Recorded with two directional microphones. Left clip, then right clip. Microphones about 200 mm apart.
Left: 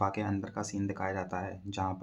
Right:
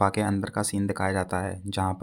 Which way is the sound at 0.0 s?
35° right (ahead or behind).